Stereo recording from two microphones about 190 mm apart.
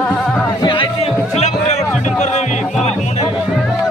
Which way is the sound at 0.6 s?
25° left (ahead or behind).